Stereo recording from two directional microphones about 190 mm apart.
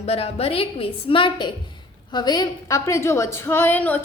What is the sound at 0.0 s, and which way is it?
A woman's voice, 30° left (ahead or behind).